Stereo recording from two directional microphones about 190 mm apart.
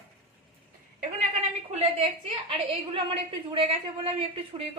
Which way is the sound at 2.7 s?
30° right (ahead or behind).